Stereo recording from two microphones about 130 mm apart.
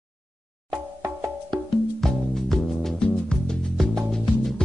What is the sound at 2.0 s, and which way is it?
Music, 5° left (ahead or behind).